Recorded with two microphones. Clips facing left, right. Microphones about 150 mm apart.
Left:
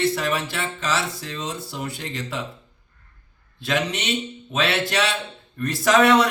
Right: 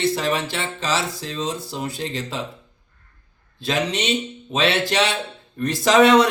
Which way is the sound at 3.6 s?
25° right (ahead or behind).